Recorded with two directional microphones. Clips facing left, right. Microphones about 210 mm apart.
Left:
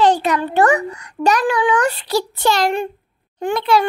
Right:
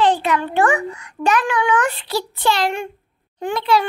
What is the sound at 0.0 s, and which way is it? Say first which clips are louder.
A child's voice: left 2 dB; 40° left (ahead or behind).